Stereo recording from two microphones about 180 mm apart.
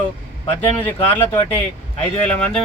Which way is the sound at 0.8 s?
10° left (ahead or behind).